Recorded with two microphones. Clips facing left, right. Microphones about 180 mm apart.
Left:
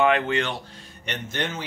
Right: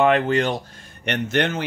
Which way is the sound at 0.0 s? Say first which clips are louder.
Right 4 dB; 40° right (ahead or behind).